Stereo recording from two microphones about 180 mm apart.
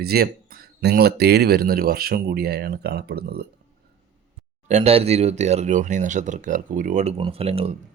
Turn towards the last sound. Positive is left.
turn(degrees=-35)  # may be behind; listen again after turning